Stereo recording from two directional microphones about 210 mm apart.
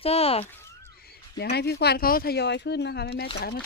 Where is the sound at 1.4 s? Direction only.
50° left (ahead or behind).